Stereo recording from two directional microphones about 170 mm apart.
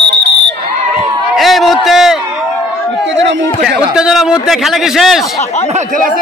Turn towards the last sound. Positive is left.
turn(degrees=0)  # may be behind; listen again after turning